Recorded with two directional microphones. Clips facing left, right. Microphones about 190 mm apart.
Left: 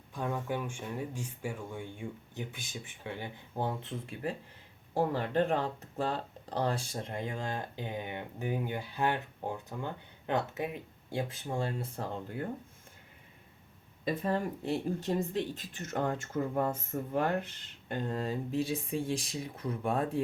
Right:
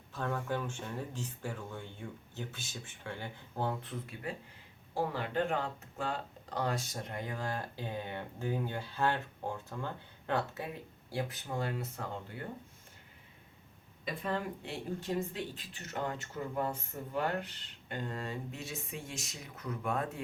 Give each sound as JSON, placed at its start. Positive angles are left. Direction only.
{"t": 0.1, "sound": "speech", "side_deg": 15}
{"t": 4.9, "sound": "speech", "side_deg": 40}
{"t": 14.0, "sound": "speech", "side_deg": 40}